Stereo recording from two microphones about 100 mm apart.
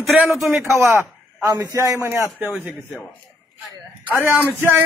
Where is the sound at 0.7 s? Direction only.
30° right (ahead or behind).